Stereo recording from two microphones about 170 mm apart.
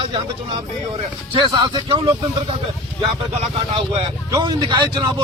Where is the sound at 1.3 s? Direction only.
30° right (ahead or behind).